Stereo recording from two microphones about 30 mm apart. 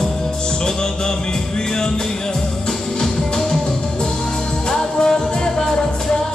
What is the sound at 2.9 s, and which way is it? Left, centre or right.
Music, left.